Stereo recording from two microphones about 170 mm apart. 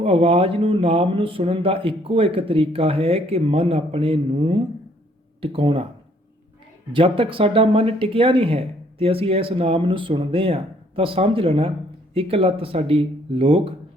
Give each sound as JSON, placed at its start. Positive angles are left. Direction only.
{"t": 0.0, "sound": "speech", "side_deg": -35}
{"t": 6.9, "sound": "speech", "side_deg": -30}